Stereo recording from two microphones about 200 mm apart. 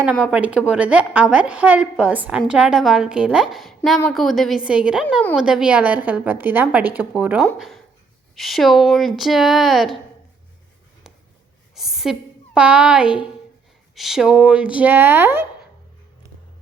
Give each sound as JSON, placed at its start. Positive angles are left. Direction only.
{"t": 0.3, "sound": "a woman's voice", "side_deg": -5}
{"t": 11.7, "sound": "a sound", "side_deg": 0}
{"t": 12.5, "sound": "a woman's voice", "side_deg": -5}